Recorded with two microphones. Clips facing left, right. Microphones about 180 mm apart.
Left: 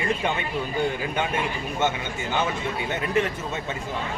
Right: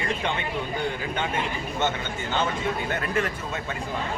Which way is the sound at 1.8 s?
10° left (ahead or behind).